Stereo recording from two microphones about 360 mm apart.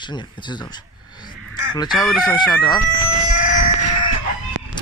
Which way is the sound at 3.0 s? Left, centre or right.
Right.